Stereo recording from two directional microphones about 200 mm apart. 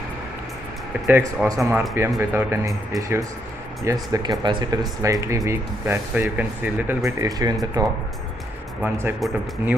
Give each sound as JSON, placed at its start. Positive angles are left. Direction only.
{"t": 1.0, "sound": "speech", "side_deg": -10}